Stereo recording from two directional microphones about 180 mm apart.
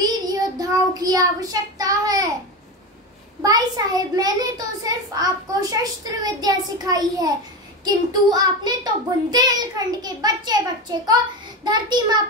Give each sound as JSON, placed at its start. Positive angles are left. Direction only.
{"t": 0.0, "sound": "child singing", "side_deg": -20}
{"t": 3.4, "sound": "a child's voice", "side_deg": -20}